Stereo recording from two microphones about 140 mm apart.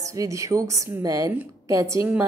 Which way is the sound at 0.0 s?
25° right (ahead or behind).